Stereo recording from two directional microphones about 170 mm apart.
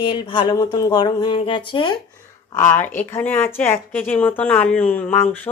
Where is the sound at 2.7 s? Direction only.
10° left (ahead or behind).